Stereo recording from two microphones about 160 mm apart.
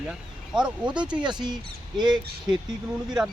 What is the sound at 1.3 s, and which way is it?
Speech, 25° right (ahead or behind).